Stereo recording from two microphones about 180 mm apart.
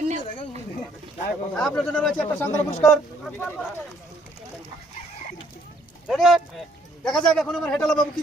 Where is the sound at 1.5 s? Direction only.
5° left (ahead or behind).